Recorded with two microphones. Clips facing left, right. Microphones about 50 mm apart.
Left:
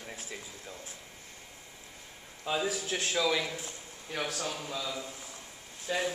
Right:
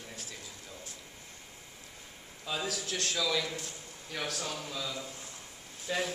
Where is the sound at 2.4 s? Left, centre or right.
Centre.